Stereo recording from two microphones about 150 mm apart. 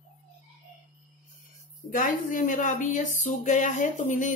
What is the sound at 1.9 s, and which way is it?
Speech, 60° left (ahead or behind).